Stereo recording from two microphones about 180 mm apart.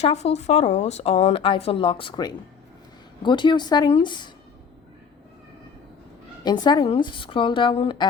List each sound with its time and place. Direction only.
0.0 s speech: 35° left (ahead or behind)
6.4 s speech: 25° left (ahead or behind)